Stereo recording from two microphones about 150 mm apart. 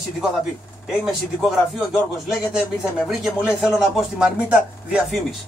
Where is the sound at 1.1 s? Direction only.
5° right (ahead or behind).